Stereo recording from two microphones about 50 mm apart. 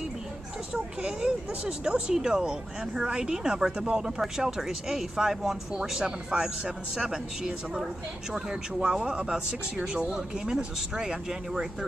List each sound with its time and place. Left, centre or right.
0.7 s speech: centre